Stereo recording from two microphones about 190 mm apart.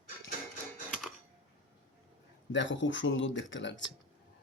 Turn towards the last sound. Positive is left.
turn(degrees=75)  # may be behind; listen again after turning